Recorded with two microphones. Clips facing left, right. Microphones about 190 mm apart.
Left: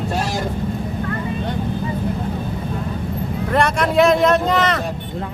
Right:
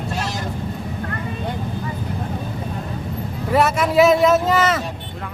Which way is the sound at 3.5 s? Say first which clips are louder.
Right 1 dB; 5° right (ahead or behind).